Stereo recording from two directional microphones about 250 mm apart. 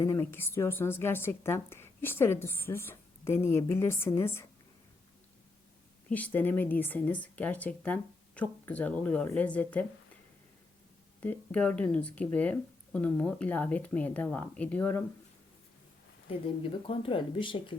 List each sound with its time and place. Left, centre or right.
0.0 s a woman's voice: centre
6.1 s speech: centre
11.2 s speech: centre
16.6 s speech: left